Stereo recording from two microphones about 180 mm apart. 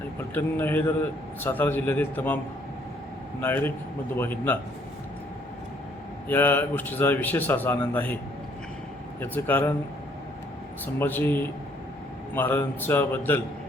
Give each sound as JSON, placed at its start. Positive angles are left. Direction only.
{"t": 0.3, "sound": "a man's voice", "side_deg": 10}
{"t": 3.4, "sound": "a man's voice", "side_deg": 10}
{"t": 6.2, "sound": "a man's voice", "side_deg": 10}
{"t": 9.2, "sound": "a man's voice", "side_deg": 10}
{"t": 10.9, "sound": "a man's voice", "side_deg": 10}